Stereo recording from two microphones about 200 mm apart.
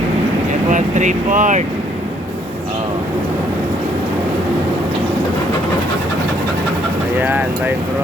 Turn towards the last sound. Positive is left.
turn(degrees=-10)  # may be behind; listen again after turning